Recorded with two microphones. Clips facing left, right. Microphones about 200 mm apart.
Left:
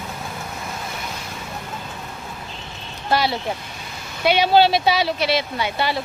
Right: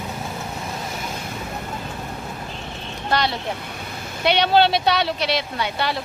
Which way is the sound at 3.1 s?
5° left (ahead or behind).